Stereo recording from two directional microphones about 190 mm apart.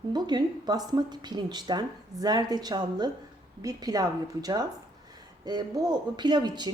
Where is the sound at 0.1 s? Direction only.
20° right (ahead or behind).